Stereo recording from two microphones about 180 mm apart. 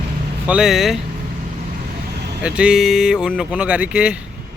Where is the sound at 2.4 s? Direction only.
5° right (ahead or behind).